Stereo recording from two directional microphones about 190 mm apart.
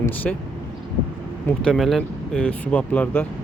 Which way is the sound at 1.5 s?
5° left (ahead or behind).